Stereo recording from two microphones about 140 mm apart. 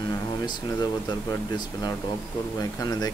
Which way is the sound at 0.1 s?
30° left (ahead or behind).